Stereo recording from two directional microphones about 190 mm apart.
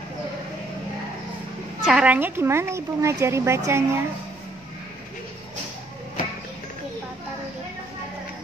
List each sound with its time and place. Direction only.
1.9 s a woman's voice: 5° right (ahead or behind)